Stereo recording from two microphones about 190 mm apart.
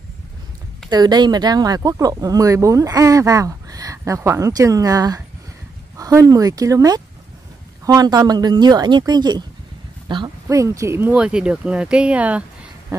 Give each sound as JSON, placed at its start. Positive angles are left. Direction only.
{"t": 0.8, "sound": "speech", "side_deg": -20}